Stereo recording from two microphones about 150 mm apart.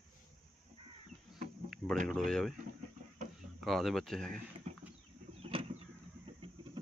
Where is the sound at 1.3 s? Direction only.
Centre (ahead or behind).